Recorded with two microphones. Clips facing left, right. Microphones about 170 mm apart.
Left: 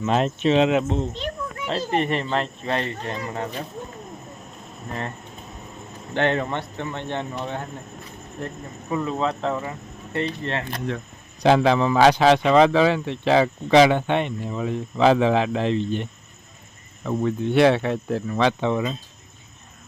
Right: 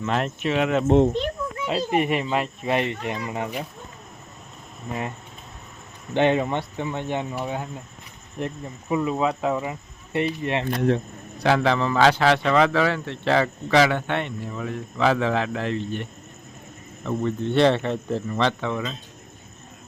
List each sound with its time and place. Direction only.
0.0 s a man's voice: 20° left (ahead or behind)
1.6 s speech: 10° right (ahead or behind)
4.9 s speech: 10° right (ahead or behind)
6.1 s speech: 15° right (ahead or behind)
8.9 s speech: 10° right (ahead or behind)
11.4 s a man's voice: 20° left (ahead or behind)
17.1 s speech: 10° left (ahead or behind)
18.6 s a man's voice: 20° left (ahead or behind)